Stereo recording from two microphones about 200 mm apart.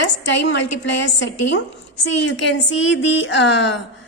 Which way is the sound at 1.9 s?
65° left (ahead or behind).